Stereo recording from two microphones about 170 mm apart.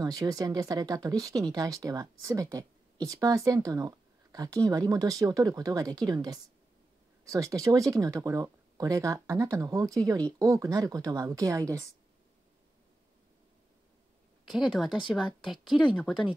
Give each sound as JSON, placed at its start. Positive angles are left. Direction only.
{"t": 0.0, "sound": "speech", "side_deg": -20}
{"t": 14.4, "sound": "speech", "side_deg": 0}